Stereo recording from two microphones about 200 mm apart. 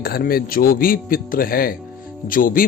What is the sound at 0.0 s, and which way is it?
Speech, 50° left (ahead or behind).